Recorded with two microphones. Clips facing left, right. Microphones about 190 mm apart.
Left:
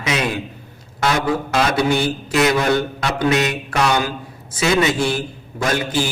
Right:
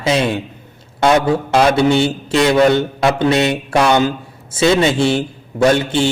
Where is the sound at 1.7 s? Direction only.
25° right (ahead or behind).